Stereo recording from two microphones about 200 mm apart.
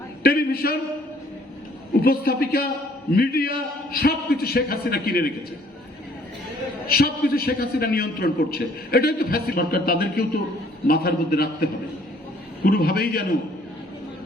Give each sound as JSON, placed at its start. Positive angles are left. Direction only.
{"t": 0.2, "sound": "a man's voice", "side_deg": 50}
{"t": 2.0, "sound": "a man's voice", "side_deg": 50}
{"t": 6.8, "sound": "a man's voice", "side_deg": 50}